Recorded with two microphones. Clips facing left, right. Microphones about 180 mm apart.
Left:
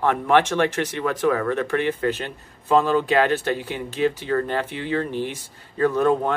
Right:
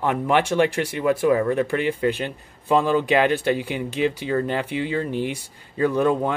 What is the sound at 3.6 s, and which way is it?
Speech, 15° right (ahead or behind).